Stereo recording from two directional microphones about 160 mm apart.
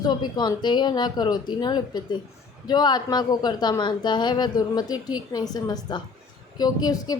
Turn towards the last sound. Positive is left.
turn(degrees=25)  # may be behind; listen again after turning